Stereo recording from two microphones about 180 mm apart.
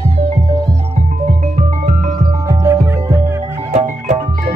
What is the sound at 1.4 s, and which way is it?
Music, 40° right (ahead or behind).